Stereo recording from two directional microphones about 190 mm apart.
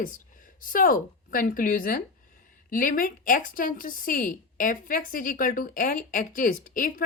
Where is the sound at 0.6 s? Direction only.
45° left (ahead or behind).